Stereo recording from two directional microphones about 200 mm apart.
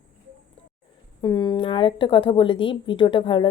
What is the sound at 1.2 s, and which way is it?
A woman's voice, 20° left (ahead or behind).